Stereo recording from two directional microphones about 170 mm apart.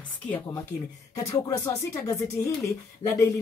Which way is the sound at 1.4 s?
15° left (ahead or behind).